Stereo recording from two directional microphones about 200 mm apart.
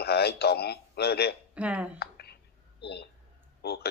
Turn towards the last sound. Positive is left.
turn(degrees=50)  # may be behind; listen again after turning